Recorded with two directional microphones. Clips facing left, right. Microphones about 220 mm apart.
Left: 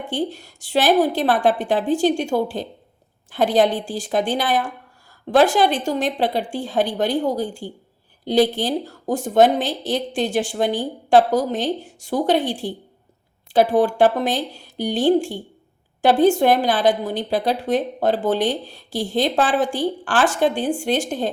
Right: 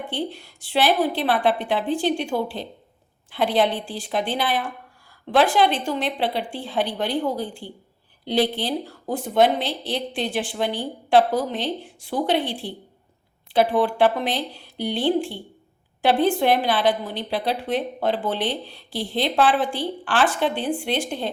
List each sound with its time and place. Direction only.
0.1 s a woman's voice: 45° left (ahead or behind)